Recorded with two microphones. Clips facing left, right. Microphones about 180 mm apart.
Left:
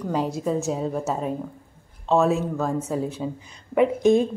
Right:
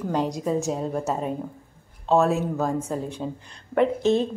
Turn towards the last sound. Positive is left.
turn(degrees=10)  # may be behind; listen again after turning